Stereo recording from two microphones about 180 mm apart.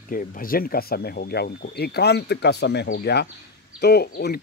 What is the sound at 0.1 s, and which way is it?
Speech, 50° left (ahead or behind).